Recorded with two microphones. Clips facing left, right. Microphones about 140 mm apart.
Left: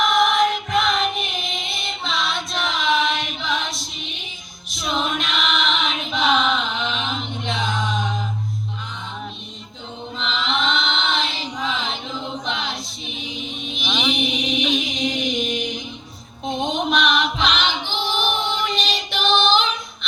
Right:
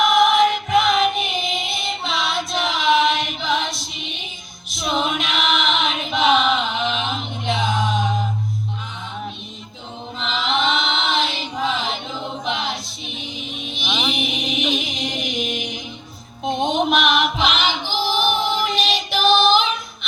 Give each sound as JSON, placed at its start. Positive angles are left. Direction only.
{"t": 0.0, "sound": "music", "side_deg": 0}
{"t": 4.7, "sound": "choir", "side_deg": 0}
{"t": 10.2, "sound": "chant", "side_deg": -5}
{"t": 16.4, "sound": "choir", "side_deg": 0}